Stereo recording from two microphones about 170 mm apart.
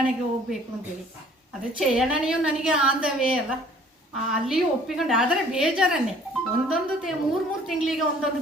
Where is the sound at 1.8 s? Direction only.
Centre (ahead or behind).